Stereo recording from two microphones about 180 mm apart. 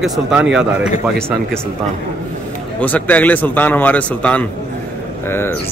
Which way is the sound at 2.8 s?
10° left (ahead or behind).